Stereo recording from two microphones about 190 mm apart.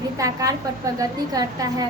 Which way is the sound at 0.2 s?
15° right (ahead or behind).